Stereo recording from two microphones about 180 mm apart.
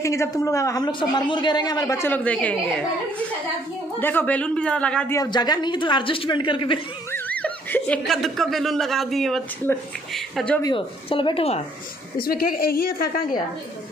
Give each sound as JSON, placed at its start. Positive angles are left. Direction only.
{"t": 0.0, "sound": "a man's voice", "side_deg": 15}
{"t": 4.0, "sound": "a man's voice", "side_deg": 10}
{"t": 5.1, "sound": "a woman's voice", "side_deg": 20}
{"t": 7.1, "sound": "speech", "side_deg": 10}
{"t": 9.7, "sound": "a man's voice", "side_deg": 10}
{"t": 10.6, "sound": "speech", "side_deg": 30}
{"t": 12.2, "sound": "a woman's voice", "side_deg": 55}